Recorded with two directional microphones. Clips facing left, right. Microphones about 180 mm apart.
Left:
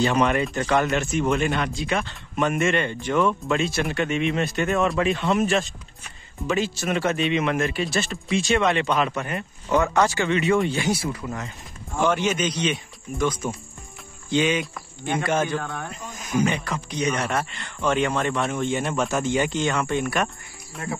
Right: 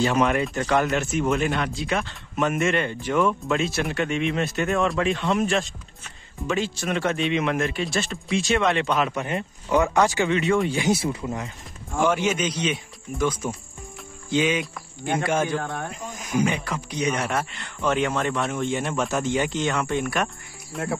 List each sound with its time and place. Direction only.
0.0 s speech: 5° right (ahead or behind)
9.1 s speech: 15° right (ahead or behind)
10.3 s speech: 5° left (ahead or behind)
10.7 s speech: 20° right (ahead or behind)
12.0 s speech: 5° right (ahead or behind)
15.6 s speech: 25° right (ahead or behind)
15.9 s speech: 10° right (ahead or behind)